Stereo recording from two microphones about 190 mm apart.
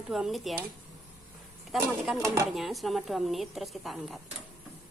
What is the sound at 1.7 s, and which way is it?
Speech, centre (ahead or behind).